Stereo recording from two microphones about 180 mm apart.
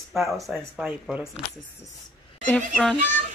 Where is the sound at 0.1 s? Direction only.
Centre (ahead or behind).